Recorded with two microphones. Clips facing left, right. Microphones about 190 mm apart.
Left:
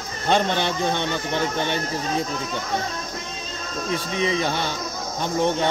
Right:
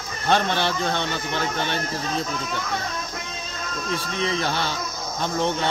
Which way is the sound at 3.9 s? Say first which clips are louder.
Left 3 dB; 15° left (ahead or behind).